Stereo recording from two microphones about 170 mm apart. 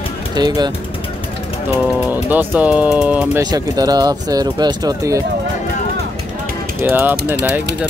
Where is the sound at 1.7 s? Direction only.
10° right (ahead or behind).